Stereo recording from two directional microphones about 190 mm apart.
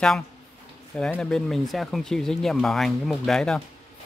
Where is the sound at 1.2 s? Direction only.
Centre (ahead or behind).